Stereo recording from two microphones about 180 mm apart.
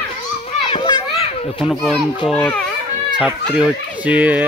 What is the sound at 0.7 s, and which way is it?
Children playing, 30° left (ahead or behind).